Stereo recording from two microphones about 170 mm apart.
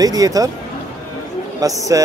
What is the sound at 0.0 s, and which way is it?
Speech, 20° right (ahead or behind).